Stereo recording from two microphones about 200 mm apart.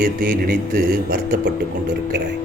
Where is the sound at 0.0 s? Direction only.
45° right (ahead or behind).